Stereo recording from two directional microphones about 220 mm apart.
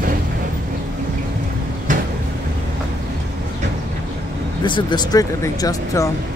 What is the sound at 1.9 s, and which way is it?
Vehicle, 35° right (ahead or behind).